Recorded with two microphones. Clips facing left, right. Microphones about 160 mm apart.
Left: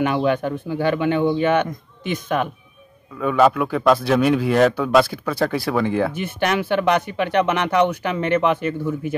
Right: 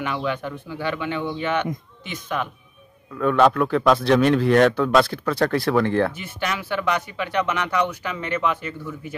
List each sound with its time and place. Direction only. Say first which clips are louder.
0.0 s speech: left 7 dB; 50° left (ahead or behind)
3.2 s speech: left 1 dB; 5° left (ahead or behind)
6.1 s speech: left 7 dB; 60° left (ahead or behind)